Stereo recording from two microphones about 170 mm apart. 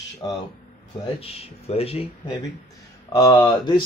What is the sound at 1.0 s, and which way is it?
Speech, 35° left (ahead or behind).